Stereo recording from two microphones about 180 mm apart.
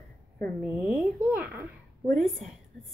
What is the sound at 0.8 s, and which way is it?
Speech, 10° right (ahead or behind).